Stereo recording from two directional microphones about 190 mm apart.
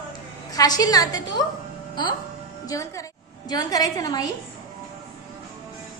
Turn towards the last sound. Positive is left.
turn(degrees=20)  # may be behind; listen again after turning